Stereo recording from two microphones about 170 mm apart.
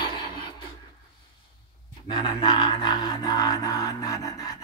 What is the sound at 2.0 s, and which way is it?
Music, 25° left (ahead or behind).